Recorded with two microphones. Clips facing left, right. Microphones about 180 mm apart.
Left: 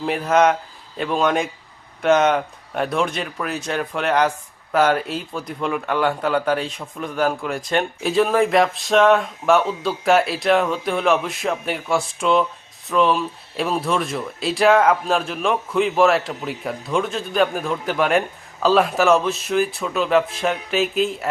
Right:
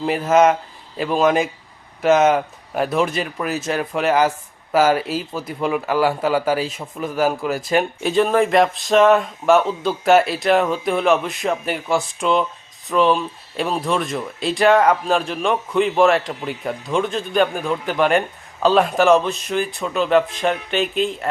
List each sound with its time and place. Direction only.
0.0 s speech: centre (ahead or behind)